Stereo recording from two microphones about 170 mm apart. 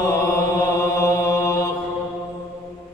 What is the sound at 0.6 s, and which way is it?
Mantra, 20° left (ahead or behind).